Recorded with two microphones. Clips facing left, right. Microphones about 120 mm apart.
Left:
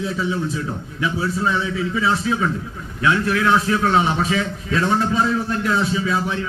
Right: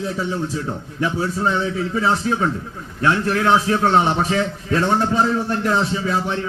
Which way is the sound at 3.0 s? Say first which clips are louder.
Even; 35° right (ahead or behind).